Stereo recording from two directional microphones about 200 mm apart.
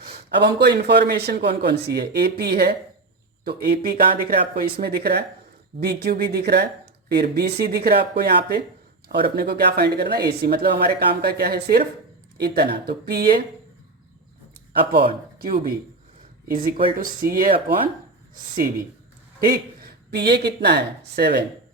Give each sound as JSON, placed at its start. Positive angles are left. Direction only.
{"t": 0.0, "sound": "a man's voice", "side_deg": -55}
{"t": 14.8, "sound": "speech", "side_deg": -50}
{"t": 19.5, "sound": "speech", "side_deg": -50}